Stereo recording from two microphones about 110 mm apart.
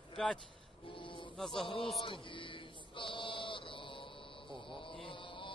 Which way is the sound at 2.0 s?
50° left (ahead or behind).